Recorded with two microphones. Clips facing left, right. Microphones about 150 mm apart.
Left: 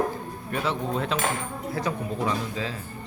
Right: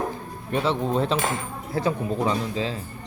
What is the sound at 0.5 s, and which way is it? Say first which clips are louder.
Speech: right 4 dB; 30° right (ahead or behind).